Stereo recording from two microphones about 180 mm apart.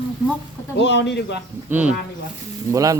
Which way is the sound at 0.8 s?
75° left (ahead or behind).